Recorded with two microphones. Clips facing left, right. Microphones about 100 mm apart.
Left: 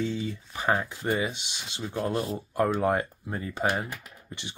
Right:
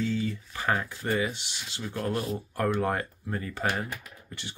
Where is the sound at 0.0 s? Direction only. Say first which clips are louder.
Right 1 dB; 20° left (ahead or behind).